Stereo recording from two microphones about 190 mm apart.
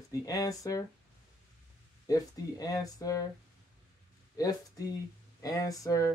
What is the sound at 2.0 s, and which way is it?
Speech, 20° left (ahead or behind).